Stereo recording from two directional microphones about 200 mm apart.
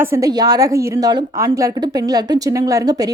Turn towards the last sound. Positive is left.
turn(degrees=-20)  # may be behind; listen again after turning